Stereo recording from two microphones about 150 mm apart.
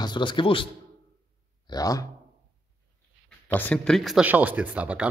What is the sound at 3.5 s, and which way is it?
Speech, 10° left (ahead or behind).